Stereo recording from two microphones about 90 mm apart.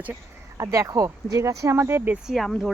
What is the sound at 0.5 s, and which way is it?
Speech, 35° right (ahead or behind).